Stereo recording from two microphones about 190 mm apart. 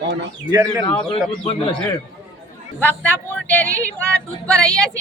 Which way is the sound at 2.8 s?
10° left (ahead or behind).